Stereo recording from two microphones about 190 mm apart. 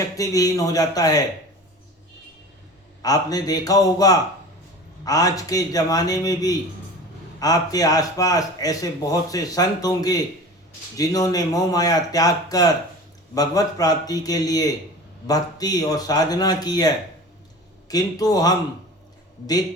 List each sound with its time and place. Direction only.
0.2 s speech: 20° left (ahead or behind)
3.0 s speech: 20° left (ahead or behind)